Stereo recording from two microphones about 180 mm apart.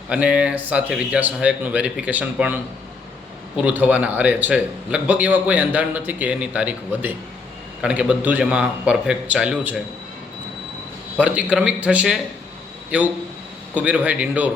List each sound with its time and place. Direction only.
0.1 s a man's voice: 5° right (ahead or behind)
3.6 s a man's voice: 10° right (ahead or behind)
11.2 s a man's voice: 5° right (ahead or behind)